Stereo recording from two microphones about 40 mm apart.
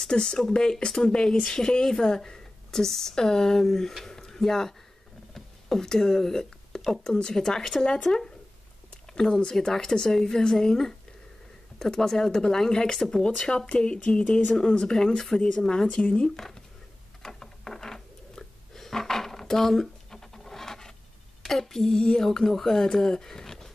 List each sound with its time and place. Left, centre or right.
0.0 s a woman's voice: centre
5.3 s a sound: centre
6.9 s a woman's voice: centre
9.4 s a woman's voice: centre
13.2 s a woman's voice: left
17.2 s a sound: centre
21.5 s a woman's voice: centre